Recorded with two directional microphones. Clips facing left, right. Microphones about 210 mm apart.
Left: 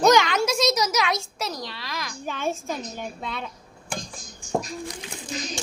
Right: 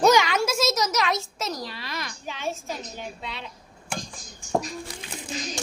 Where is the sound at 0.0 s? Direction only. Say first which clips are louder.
Left 1 dB; 5° right (ahead or behind).